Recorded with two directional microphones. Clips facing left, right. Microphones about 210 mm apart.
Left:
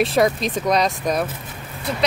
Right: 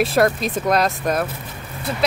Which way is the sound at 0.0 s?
Centre (ahead or behind).